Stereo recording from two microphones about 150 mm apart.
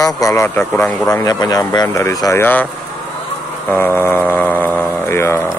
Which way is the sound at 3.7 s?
15° left (ahead or behind).